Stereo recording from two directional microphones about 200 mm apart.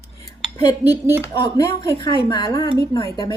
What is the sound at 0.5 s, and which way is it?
Speech, 20° left (ahead or behind).